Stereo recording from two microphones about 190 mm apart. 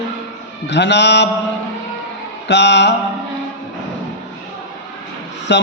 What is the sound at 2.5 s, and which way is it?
Speech, 65° left (ahead or behind).